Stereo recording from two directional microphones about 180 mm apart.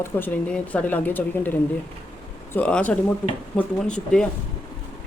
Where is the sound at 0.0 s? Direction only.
10° left (ahead or behind).